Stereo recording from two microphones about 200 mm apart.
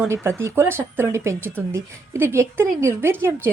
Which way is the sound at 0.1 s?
15° right (ahead or behind).